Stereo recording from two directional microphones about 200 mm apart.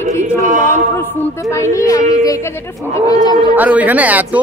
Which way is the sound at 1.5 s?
15° left (ahead or behind).